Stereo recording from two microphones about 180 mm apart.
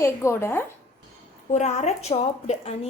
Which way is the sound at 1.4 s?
40° left (ahead or behind).